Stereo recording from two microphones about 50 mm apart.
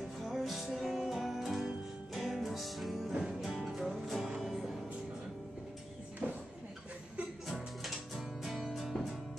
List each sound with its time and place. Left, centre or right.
0.2 s music: centre
6.2 s a sound: right
7.4 s music: centre